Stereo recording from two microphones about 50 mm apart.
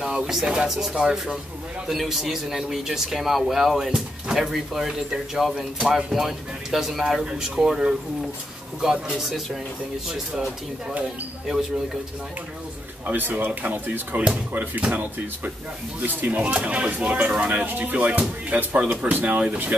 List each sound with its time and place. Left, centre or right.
0.3 s a man's voice: centre
13.0 s speech: right
16.4 s speech: right
17.6 s speech: right